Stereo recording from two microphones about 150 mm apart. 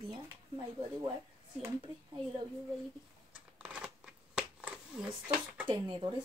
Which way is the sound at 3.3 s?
5° right (ahead or behind).